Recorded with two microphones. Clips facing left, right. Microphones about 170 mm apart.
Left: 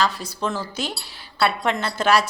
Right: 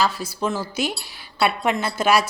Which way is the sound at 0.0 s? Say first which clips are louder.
Right 1 dB; 5° right (ahead or behind).